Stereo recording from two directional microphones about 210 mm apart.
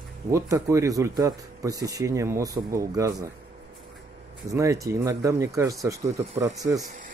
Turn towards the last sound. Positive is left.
turn(degrees=-15)  # may be behind; listen again after turning